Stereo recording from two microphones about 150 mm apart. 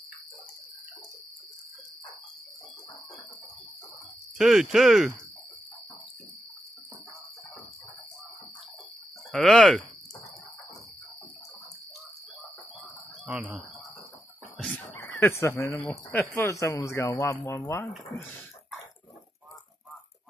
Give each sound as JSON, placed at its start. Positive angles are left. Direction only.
{"t": 4.4, "sound": "speech", "side_deg": 0}
{"t": 9.3, "sound": "speech", "side_deg": 0}
{"t": 13.3, "sound": "speech", "side_deg": 0}
{"t": 15.0, "sound": "speech", "side_deg": 20}